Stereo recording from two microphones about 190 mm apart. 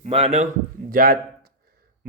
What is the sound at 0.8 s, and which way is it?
Speech, 50° right (ahead or behind).